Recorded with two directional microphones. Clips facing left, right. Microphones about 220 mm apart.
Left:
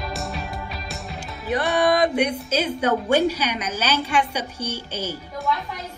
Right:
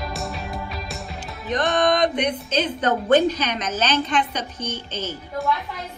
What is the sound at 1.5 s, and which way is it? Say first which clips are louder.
A woman's voice: even; 10° left (ahead or behind).